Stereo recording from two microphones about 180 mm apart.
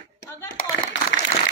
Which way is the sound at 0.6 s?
55° left (ahead or behind).